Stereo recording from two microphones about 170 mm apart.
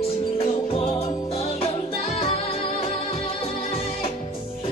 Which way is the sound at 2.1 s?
35° left (ahead or behind).